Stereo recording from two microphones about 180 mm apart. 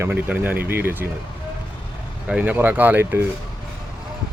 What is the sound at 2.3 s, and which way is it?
Speech, 10° right (ahead or behind).